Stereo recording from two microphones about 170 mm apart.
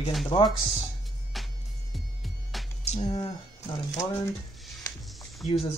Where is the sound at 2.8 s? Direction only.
40° left (ahead or behind).